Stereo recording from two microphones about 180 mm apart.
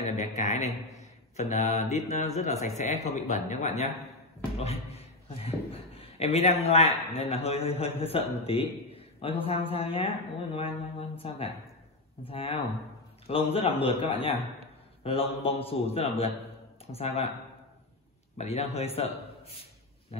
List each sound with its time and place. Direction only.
0.0 s a man's voice: 40° left (ahead or behind)
18.4 s a man's voice: 35° left (ahead or behind)